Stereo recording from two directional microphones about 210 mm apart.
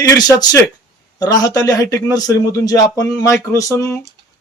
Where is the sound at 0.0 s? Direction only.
20° left (ahead or behind).